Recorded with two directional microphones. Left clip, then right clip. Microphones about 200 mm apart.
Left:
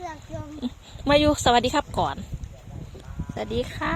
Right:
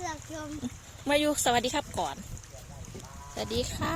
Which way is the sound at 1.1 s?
30° left (ahead or behind).